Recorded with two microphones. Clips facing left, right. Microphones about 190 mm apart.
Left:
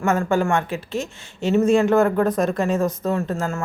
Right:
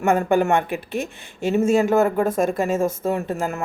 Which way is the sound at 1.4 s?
10° right (ahead or behind).